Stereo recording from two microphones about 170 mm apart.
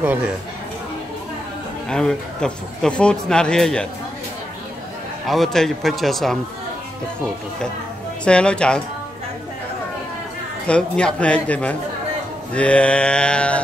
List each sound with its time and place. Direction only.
1.9 s a man's voice: 5° left (ahead or behind)
5.2 s a man's voice: centre (ahead or behind)
8.3 s a man's voice: 5° left (ahead or behind)
10.7 s speech: 5° left (ahead or behind)